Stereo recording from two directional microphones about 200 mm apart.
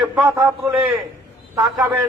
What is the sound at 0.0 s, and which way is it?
Speech, 5° right (ahead or behind).